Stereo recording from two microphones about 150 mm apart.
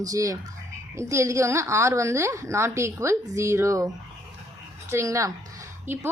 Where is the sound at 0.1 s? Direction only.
20° right (ahead or behind).